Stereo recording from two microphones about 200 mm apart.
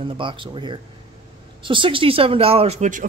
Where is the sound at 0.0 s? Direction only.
25° right (ahead or behind).